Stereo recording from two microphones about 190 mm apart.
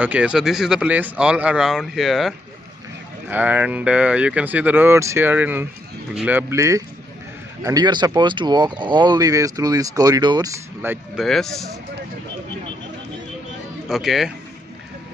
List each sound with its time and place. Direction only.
0.0 s speech: 5° right (ahead or behind)
13.8 s speech: centre (ahead or behind)